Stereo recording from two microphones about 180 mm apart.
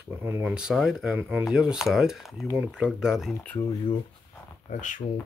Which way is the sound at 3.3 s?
20° left (ahead or behind).